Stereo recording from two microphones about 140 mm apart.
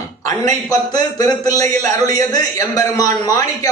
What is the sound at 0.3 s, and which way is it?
A man's voice, 25° left (ahead or behind).